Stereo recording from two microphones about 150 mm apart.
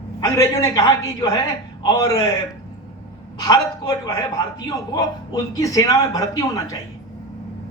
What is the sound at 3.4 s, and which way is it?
A man's voice, 25° left (ahead or behind).